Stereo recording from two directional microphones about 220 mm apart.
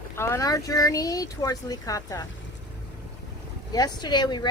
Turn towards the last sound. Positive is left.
turn(degrees=20)  # may be behind; listen again after turning